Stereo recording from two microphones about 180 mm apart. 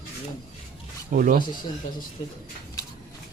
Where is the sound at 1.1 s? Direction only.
50° right (ahead or behind).